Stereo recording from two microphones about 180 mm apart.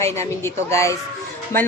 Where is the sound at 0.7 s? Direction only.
15° left (ahead or behind).